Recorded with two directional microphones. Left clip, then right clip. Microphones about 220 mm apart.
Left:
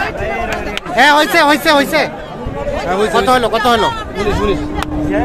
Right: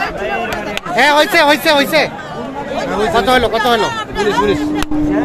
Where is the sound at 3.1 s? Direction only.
10° left (ahead or behind).